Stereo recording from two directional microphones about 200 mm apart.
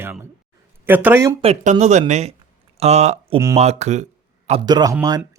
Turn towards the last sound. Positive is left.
turn(degrees=-20)  # may be behind; listen again after turning